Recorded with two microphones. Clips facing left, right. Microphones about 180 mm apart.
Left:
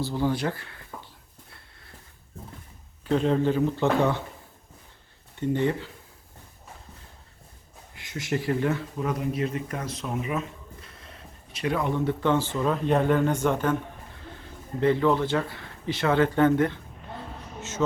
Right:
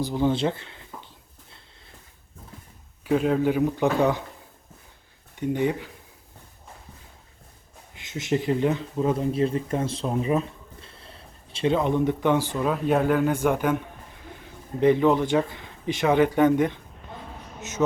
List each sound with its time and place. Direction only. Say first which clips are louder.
0.0 s speech: right 3 dB; 20° right (ahead or behind)
3.0 s a man's voice: right 1 dB; 5° right (ahead or behind)
5.4 s a man's voice: right 1 dB; 15° right (ahead or behind)
7.9 s speech: right 4 dB; 20° right (ahead or behind)